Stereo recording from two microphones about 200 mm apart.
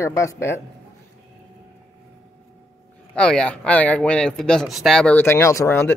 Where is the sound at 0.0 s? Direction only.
15° left (ahead or behind).